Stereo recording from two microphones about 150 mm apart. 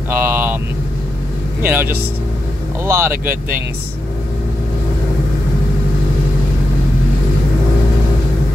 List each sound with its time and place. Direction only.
0.1 s vehicle: 15° right (ahead or behind)
1.6 s speech: 15° right (ahead or behind)